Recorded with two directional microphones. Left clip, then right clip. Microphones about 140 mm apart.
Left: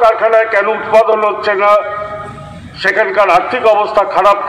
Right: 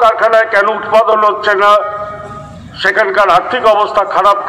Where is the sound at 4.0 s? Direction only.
15° left (ahead or behind).